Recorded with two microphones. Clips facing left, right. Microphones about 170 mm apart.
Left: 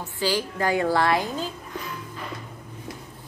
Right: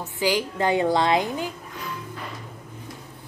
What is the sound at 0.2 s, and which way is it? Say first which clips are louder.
A woman's voice: right 2 dB; 15° right (ahead or behind).